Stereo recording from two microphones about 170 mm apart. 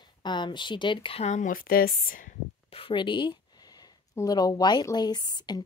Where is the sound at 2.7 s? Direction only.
30° left (ahead or behind).